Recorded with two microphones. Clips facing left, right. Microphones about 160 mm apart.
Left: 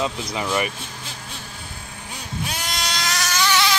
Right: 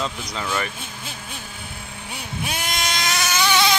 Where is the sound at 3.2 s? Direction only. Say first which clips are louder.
Right 1 dB; 20° right (ahead or behind).